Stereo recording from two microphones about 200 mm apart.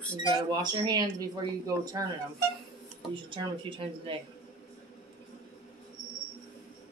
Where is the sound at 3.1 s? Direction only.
25° right (ahead or behind).